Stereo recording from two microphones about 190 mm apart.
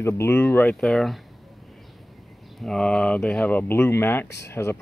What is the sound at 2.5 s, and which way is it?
Speech, 5° left (ahead or behind).